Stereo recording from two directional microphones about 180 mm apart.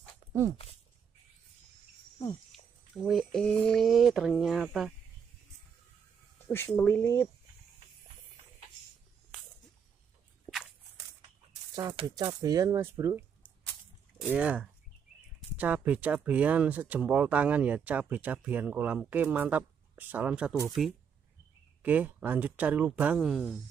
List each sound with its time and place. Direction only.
3.0 s speech: centre (ahead or behind)
6.4 s speech: 10° left (ahead or behind)
10.4 s walk: centre (ahead or behind)
11.9 s speech: 25° right (ahead or behind)
14.3 s speech: 10° right (ahead or behind)